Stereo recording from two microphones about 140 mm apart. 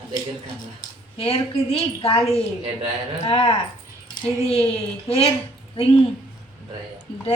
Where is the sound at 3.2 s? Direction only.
40° left (ahead or behind).